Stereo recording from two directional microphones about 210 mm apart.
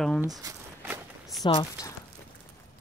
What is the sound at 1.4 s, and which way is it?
Speech, 20° left (ahead or behind).